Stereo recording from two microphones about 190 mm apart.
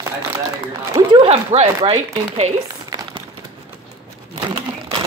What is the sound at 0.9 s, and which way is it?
Speech, 25° right (ahead or behind).